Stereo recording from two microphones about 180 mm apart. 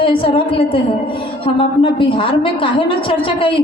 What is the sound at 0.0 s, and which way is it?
A woman's voice, 30° left (ahead or behind).